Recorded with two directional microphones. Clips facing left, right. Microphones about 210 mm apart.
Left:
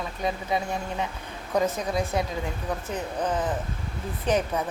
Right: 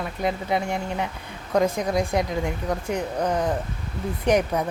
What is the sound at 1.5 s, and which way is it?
A woman's voice, 10° right (ahead or behind).